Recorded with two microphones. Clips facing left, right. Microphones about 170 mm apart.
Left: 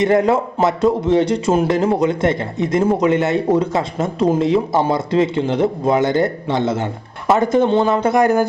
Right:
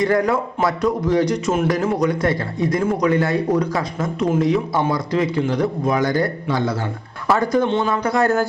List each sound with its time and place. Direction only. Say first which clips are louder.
0.0 s speech: left 3 dB; 25° left (ahead or behind)